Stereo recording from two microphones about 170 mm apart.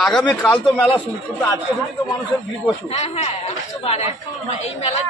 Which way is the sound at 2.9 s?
40° left (ahead or behind).